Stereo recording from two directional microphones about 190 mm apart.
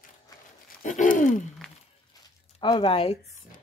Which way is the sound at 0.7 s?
45° left (ahead or behind).